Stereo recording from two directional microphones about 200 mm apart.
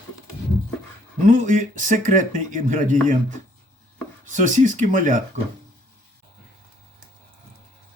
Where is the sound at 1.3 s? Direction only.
40° right (ahead or behind).